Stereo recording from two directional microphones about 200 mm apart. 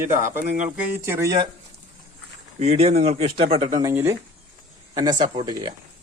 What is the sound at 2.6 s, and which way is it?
Speech, 30° right (ahead or behind).